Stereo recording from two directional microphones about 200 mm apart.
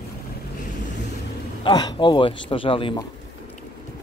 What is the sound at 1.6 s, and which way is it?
A man's voice, 20° left (ahead or behind).